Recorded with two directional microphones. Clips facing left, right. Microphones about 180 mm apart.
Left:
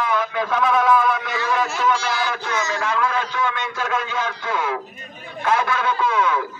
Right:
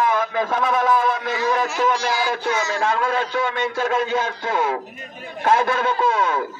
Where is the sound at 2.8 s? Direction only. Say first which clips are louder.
Right 2 dB; 50° right (ahead or behind).